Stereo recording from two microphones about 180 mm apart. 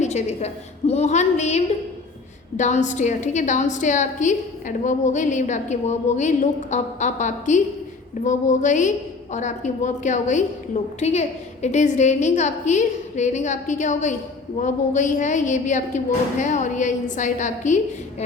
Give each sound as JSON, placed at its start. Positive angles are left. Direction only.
{"t": 0.0, "sound": "a woman's voice", "side_deg": 40}